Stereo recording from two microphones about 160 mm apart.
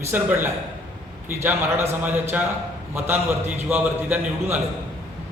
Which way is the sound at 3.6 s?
10° right (ahead or behind).